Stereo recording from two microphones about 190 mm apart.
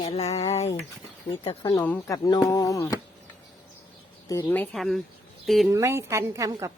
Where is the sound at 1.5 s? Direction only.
25° left (ahead or behind).